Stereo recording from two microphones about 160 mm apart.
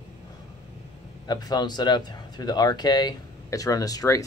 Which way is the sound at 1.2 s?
25° left (ahead or behind).